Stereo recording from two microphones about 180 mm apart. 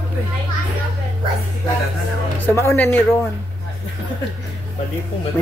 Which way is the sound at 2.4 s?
10° left (ahead or behind).